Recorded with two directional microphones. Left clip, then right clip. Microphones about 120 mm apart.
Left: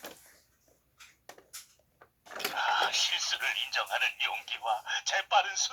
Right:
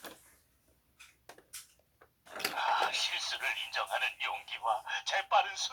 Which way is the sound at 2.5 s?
15° left (ahead or behind).